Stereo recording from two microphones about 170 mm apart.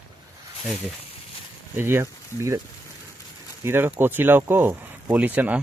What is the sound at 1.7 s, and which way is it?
Speech, 15° right (ahead or behind).